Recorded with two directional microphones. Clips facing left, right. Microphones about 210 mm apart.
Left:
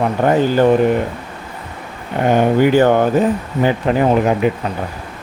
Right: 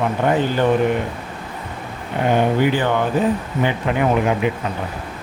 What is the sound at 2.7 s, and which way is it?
Speech, 45° left (ahead or behind).